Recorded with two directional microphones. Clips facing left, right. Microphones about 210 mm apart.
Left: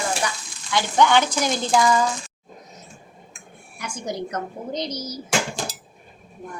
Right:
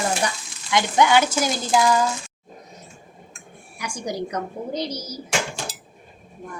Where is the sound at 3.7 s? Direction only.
15° right (ahead or behind).